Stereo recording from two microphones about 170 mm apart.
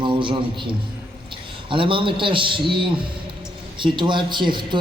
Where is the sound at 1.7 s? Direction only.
30° right (ahead or behind).